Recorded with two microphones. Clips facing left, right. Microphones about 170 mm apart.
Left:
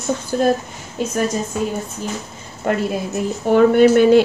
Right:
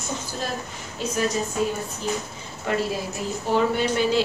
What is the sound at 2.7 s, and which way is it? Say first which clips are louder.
A woman's voice: left 5 dB; 50° left (ahead or behind).